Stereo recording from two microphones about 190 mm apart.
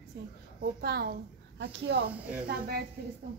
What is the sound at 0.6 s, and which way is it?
A woman's voice, 55° right (ahead or behind).